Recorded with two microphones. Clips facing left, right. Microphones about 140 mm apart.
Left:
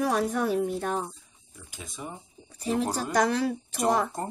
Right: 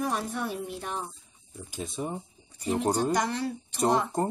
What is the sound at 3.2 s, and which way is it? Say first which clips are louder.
Speech: left 5 dB; 90° left.